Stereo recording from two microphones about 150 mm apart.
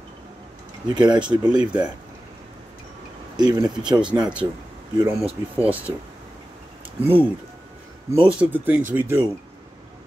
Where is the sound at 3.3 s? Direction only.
25° right (ahead or behind).